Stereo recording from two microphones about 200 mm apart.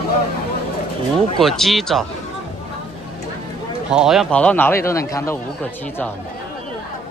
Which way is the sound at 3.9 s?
5° right (ahead or behind).